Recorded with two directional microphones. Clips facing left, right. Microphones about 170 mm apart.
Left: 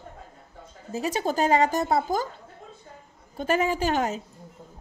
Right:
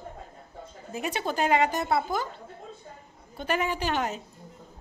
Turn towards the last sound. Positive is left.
turn(degrees=40)  # may be behind; listen again after turning